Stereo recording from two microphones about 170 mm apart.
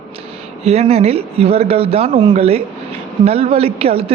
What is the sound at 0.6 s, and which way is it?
A woman's voice, 40° right (ahead or behind).